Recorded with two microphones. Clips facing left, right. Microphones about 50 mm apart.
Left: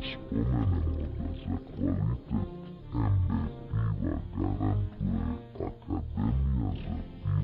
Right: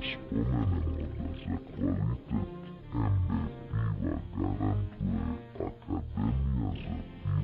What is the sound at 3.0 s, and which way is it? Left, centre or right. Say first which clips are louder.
Music: left 1 dB; centre.